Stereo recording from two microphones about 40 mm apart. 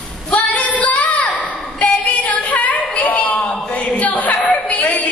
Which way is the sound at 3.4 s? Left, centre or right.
Left.